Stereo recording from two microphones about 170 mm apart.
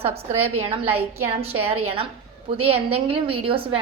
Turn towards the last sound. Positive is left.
turn(degrees=-30)  # may be behind; listen again after turning